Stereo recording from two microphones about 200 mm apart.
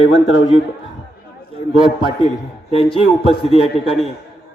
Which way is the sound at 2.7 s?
30° left (ahead or behind).